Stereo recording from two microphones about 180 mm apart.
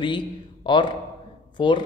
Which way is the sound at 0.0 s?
25° left (ahead or behind).